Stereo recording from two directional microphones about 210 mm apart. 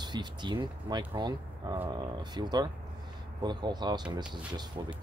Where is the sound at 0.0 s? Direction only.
20° right (ahead or behind).